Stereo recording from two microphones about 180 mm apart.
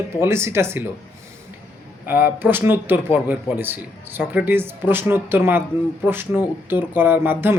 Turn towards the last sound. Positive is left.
turn(degrees=-10)  # may be behind; listen again after turning